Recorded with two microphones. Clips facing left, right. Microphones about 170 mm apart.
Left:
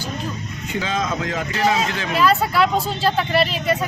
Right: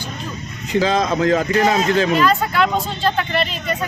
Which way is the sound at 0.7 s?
35° right (ahead or behind).